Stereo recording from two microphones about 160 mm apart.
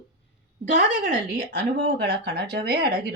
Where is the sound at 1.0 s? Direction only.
90° right.